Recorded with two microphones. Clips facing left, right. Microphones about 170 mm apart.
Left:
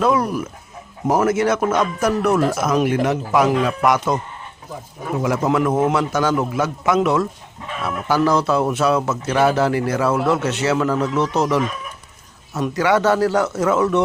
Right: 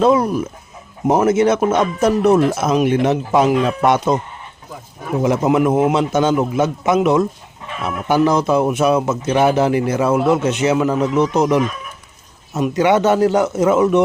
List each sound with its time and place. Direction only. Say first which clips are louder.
0.0 s speech: right 4 dB; 25° right (ahead or behind)
5.2 s speech: right 4 dB; 20° right (ahead or behind)